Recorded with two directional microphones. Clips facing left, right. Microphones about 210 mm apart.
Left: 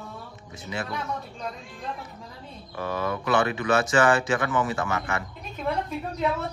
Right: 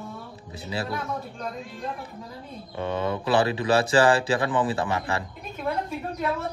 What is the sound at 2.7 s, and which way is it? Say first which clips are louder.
Speech: right 2 dB; 25° right (ahead or behind).